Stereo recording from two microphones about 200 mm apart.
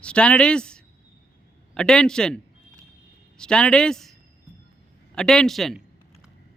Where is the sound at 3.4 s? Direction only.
5° left (ahead or behind).